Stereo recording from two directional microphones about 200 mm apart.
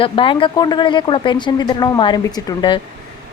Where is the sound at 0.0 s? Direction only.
25° left (ahead or behind).